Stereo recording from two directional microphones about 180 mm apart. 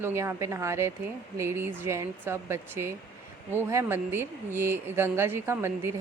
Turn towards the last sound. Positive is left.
turn(degrees=-15)  # may be behind; listen again after turning